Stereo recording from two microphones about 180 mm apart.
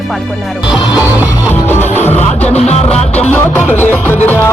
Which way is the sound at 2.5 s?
35° left (ahead or behind).